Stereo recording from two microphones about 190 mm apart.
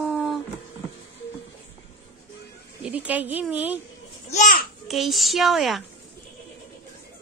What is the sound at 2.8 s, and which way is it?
Speech, 10° right (ahead or behind).